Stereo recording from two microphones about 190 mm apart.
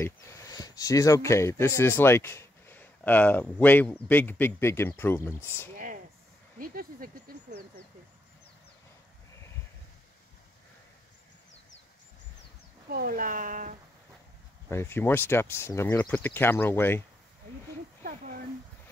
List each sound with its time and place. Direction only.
0.0 s speech: 20° left (ahead or behind)
6.6 s speech: 50° right (ahead or behind)
12.9 s speech: 50° right (ahead or behind)
14.7 s speech: 15° left (ahead or behind)